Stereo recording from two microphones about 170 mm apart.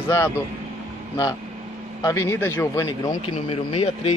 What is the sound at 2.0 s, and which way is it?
Speech, 15° left (ahead or behind).